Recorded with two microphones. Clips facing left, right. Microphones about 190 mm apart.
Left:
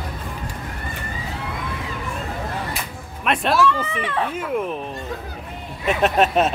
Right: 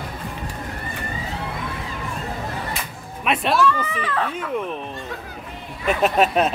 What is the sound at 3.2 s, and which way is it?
Speech, centre (ahead or behind).